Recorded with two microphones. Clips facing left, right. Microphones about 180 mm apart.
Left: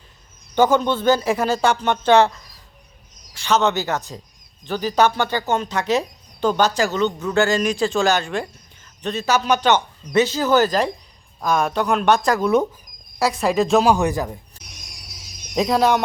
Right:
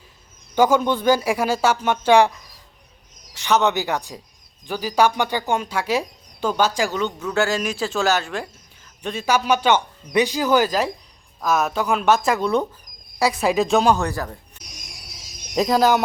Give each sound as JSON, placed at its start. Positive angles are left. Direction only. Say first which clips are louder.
{"t": 0.5, "sound": "speech", "louder": "even", "side_deg": -10}
{"t": 13.9, "sound": "speech", "louder": "left 3 dB", "side_deg": 15}
{"t": 15.5, "sound": "speech", "louder": "even", "side_deg": 0}